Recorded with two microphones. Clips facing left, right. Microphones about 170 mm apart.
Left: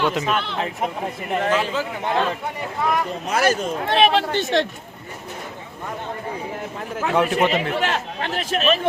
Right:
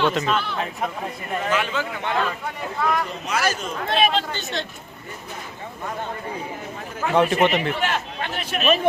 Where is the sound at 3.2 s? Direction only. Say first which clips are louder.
Left 4 dB; 50° left (ahead or behind).